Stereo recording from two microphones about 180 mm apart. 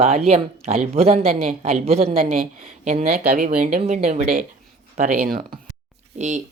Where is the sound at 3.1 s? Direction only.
55° right (ahead or behind).